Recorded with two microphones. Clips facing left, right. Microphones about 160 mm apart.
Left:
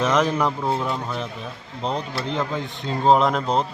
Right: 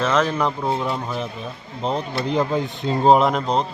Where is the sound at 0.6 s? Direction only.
Centre (ahead or behind).